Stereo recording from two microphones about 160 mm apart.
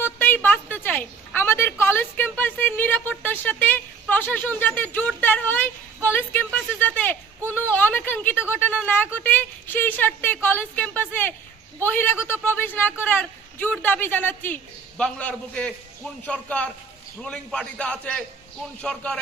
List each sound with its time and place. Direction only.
0.0 s a woman's voice: 10° left (ahead or behind)